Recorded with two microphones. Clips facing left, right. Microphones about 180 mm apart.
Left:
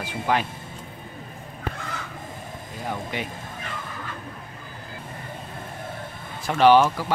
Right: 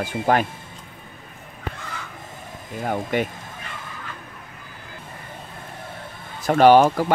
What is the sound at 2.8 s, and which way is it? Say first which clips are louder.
Speech: right 7 dB; 55° right (ahead or behind).